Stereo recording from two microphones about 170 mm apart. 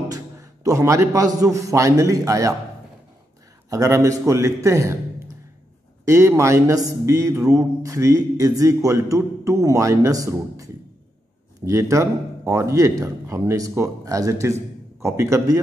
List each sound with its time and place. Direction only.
0.1 s a man's voice: 20° right (ahead or behind)
3.7 s speech: 15° right (ahead or behind)
6.0 s speech: 20° right (ahead or behind)